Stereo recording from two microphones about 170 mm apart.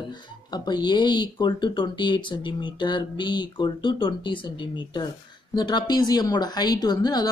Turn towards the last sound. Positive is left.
turn(degrees=25)  # may be behind; listen again after turning